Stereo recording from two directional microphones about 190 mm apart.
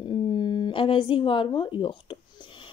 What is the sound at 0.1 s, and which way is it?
A woman's voice, 25° left (ahead or behind).